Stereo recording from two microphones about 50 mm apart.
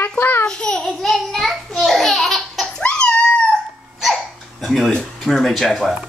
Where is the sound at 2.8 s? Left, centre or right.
Centre.